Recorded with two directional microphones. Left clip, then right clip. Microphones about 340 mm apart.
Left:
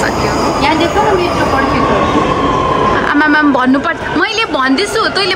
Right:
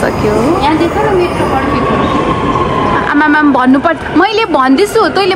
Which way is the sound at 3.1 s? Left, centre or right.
Centre.